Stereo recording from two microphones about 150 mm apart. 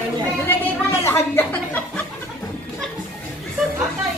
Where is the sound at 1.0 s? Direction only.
15° left (ahead or behind).